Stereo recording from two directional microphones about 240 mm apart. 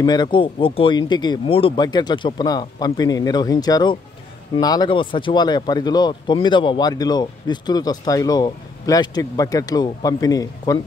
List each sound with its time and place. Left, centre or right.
0.0 s speech: centre